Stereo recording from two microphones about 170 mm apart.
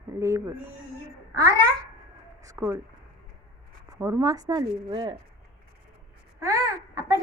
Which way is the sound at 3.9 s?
20° right (ahead or behind).